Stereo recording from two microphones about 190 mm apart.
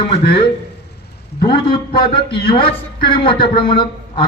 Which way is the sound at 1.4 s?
25° left (ahead or behind).